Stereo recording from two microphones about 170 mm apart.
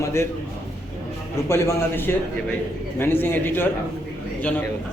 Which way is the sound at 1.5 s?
15° left (ahead or behind).